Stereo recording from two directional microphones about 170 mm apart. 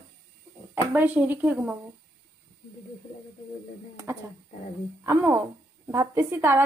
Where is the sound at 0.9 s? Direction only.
10° right (ahead or behind).